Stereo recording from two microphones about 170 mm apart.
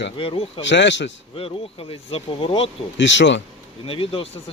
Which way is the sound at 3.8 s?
30° left (ahead or behind).